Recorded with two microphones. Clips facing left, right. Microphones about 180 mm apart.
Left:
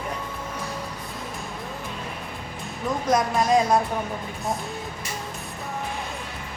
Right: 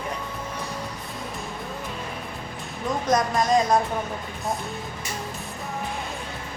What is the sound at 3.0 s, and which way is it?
Music, 5° left (ahead or behind).